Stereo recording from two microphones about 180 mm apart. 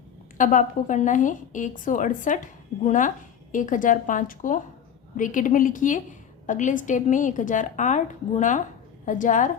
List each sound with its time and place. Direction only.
0.3 s a woman's voice: 45° left (ahead or behind)